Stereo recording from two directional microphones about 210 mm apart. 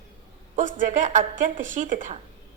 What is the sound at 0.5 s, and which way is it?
A woman's voice, 35° right (ahead or behind).